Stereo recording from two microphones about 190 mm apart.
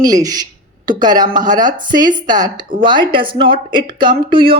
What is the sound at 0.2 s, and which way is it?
A woman's voice, 20° right (ahead or behind).